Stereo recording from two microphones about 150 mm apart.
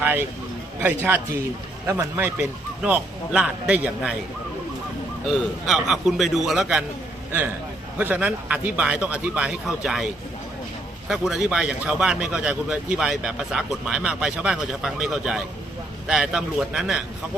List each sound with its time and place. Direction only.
0.0 s a sound: 10° right (ahead or behind)
0.8 s a man's voice: 10° right (ahead or behind)
5.2 s speech: centre (ahead or behind)
7.9 s a man's voice: 10° right (ahead or behind)
11.1 s speech: 5° right (ahead or behind)